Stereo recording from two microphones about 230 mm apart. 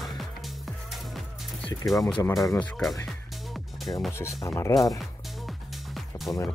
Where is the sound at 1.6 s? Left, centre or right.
Centre.